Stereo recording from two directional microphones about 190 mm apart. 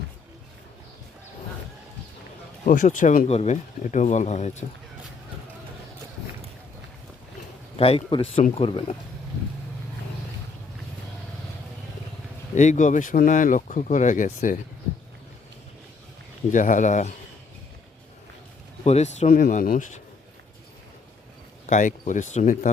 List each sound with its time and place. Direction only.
2.6 s speech: 40° left (ahead or behind)
7.8 s speech: 30° left (ahead or behind)
12.5 s speech: 40° left (ahead or behind)
16.5 s speech: 40° left (ahead or behind)
18.9 s speech: 35° left (ahead or behind)
21.7 s speech: 40° left (ahead or behind)